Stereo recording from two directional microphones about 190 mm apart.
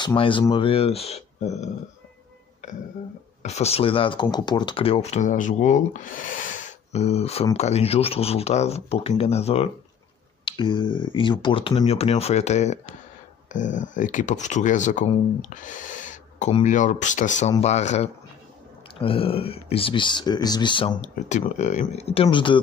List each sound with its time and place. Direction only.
0.0 s speech: 25° left (ahead or behind)
3.4 s speech: 35° left (ahead or behind)
21.0 s speech: 40° left (ahead or behind)